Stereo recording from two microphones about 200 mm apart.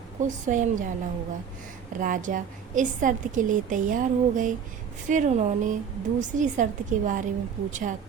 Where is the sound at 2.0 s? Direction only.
40° right (ahead or behind).